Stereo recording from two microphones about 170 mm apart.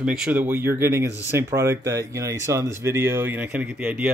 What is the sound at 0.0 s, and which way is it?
Speech, 5° right (ahead or behind).